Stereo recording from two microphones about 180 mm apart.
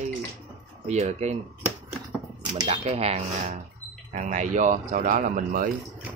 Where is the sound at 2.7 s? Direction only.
35° right (ahead or behind).